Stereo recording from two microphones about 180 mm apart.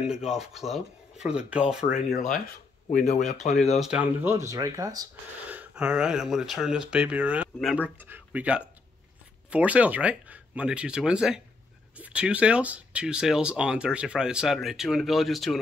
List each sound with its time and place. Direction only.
0.0 s speech: 5° right (ahead or behind)
2.9 s speech: 45° left (ahead or behind)
3.2 s speech: centre (ahead or behind); by 5.0 s 15° right (ahead or behind)
5.5 s speech: 5° right (ahead or behind)